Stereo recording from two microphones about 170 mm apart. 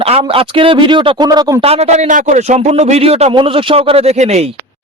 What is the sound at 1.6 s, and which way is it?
A man's voice, 40° right (ahead or behind).